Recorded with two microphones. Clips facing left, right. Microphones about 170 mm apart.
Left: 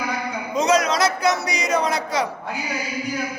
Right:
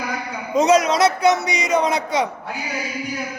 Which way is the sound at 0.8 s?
25° right (ahead or behind).